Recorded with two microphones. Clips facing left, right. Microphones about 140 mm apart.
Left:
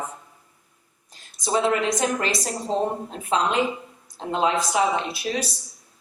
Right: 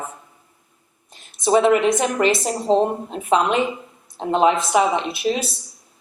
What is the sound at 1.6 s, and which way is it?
Speech, 20° right (ahead or behind).